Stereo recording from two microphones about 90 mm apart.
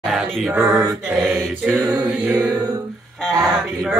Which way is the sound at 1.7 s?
35° right (ahead or behind).